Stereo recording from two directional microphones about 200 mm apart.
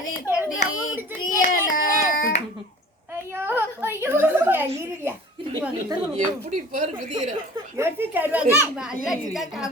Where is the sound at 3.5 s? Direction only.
10° right (ahead or behind).